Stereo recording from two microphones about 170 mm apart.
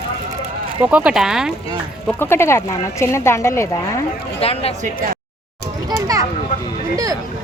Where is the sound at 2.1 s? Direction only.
15° left (ahead or behind).